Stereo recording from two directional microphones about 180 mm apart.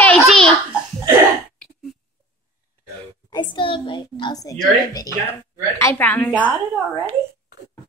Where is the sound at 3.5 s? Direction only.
30° left (ahead or behind); by 6.3 s 10° left (ahead or behind).